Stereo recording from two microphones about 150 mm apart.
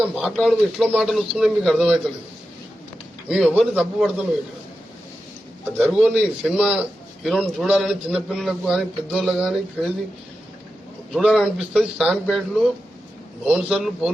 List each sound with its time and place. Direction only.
0.2 s a man's voice: centre (ahead or behind)
3.2 s a man's voice: 5° right (ahead or behind)
5.9 s a man's voice: 5° right (ahead or behind)
11.1 s a man's voice: centre (ahead or behind)